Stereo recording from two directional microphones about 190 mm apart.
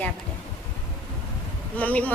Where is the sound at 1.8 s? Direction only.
10° left (ahead or behind).